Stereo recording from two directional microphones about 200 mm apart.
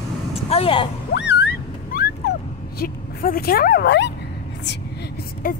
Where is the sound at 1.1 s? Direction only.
60° left (ahead or behind).